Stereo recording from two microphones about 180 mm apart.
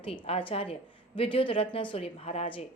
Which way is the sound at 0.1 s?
30° left (ahead or behind).